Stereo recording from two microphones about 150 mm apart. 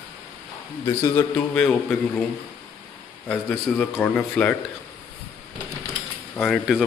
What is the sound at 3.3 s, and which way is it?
A man's voice, 5° left (ahead or behind).